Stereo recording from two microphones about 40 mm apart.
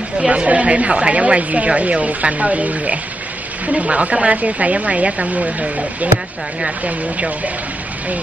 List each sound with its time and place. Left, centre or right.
0.3 s speech: right